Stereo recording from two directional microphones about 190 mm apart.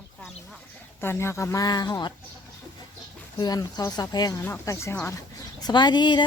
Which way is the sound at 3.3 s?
20° left (ahead or behind).